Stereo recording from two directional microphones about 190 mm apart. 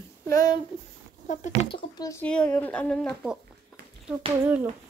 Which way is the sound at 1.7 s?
20° left (ahead or behind).